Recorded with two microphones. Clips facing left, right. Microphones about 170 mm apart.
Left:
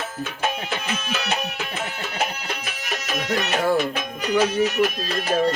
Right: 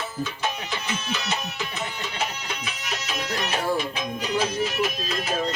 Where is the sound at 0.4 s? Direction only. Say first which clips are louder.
Left 7 dB; 55° left (ahead or behind).